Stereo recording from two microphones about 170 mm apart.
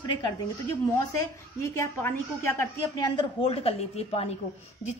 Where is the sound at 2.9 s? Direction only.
25° left (ahead or behind).